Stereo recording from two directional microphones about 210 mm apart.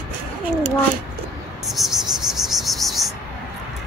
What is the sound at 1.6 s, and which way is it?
Cricket, centre (ahead or behind).